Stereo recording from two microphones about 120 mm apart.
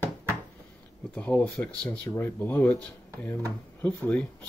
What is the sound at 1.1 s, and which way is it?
Speech, 10° left (ahead or behind).